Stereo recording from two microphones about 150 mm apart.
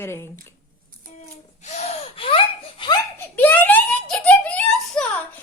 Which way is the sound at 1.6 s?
50° left (ahead or behind).